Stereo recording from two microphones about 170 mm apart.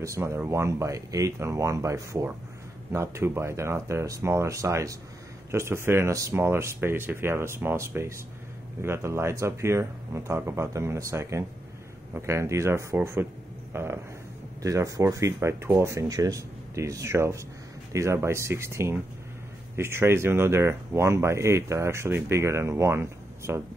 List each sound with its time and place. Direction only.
0.0 s speech: 15° right (ahead or behind)